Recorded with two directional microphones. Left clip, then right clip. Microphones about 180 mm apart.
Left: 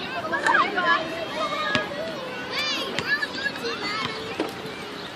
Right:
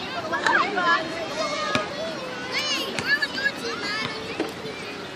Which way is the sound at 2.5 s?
15° right (ahead or behind).